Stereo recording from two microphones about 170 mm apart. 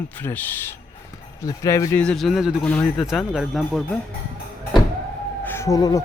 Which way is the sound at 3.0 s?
5° right (ahead or behind).